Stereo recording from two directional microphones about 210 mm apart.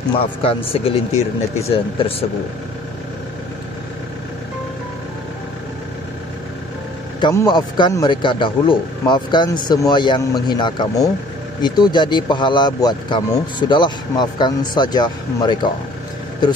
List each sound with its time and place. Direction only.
0.2 s speech: 25° left (ahead or behind)
7.2 s speech: 20° left (ahead or behind)